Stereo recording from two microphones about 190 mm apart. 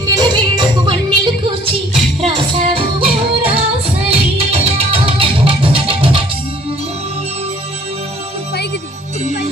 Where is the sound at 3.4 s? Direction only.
30° right (ahead or behind).